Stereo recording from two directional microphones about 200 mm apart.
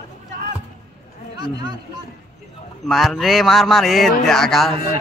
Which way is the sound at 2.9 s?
Centre (ahead or behind).